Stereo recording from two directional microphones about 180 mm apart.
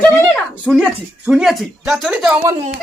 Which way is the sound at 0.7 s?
Centre (ahead or behind).